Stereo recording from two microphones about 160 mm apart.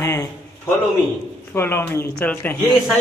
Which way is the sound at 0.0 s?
15° left (ahead or behind).